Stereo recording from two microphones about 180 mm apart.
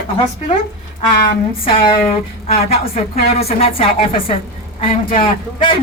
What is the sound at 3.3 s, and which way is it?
A man's voice, 35° left (ahead or behind).